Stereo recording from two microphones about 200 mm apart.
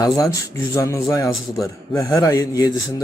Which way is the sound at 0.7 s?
15° left (ahead or behind).